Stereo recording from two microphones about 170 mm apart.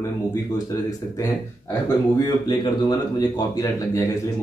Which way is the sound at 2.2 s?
25° left (ahead or behind).